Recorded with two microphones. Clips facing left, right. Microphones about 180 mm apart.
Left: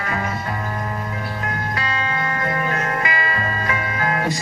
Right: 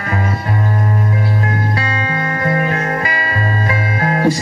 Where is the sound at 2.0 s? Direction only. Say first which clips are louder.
Right 5 dB; 40° right (ahead or behind).